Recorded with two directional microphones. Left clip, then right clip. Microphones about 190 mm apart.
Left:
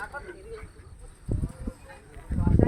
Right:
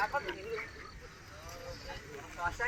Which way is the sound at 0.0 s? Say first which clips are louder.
Right 4 dB; 35° right (ahead or behind).